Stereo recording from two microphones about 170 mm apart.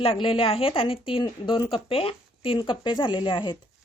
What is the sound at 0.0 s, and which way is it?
A woman's voice, 35° left (ahead or behind).